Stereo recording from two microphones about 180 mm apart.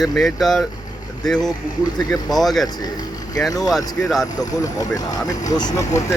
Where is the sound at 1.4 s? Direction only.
20° left (ahead or behind).